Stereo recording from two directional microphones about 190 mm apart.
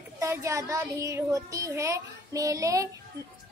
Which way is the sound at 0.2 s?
15° right (ahead or behind).